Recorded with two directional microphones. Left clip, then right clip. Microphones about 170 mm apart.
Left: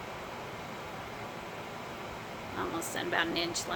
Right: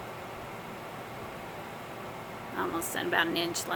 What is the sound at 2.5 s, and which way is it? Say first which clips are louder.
Speech: right 3 dB; 15° right (ahead or behind).